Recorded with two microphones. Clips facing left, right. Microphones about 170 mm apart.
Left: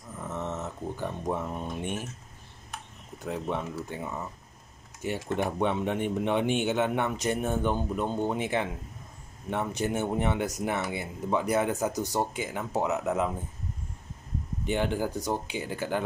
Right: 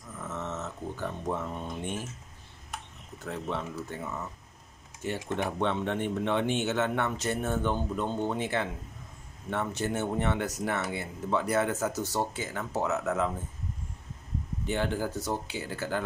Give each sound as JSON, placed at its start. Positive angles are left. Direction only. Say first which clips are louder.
{"t": 0.3, "sound": "a sound", "louder": "left 2 dB", "side_deg": 15}
{"t": 3.2, "sound": "speech", "louder": "left 2 dB", "side_deg": 15}
{"t": 14.7, "sound": "speech", "louder": "left 2 dB", "side_deg": 15}